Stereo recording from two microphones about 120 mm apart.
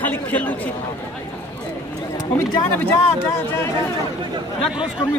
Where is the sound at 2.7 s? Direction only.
20° left (ahead or behind).